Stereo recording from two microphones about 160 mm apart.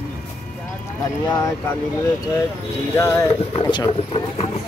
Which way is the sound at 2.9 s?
20° left (ahead or behind).